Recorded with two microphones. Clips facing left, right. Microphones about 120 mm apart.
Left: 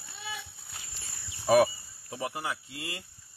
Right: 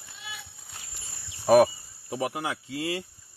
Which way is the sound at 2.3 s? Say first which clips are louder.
Right 4 dB; 90° right.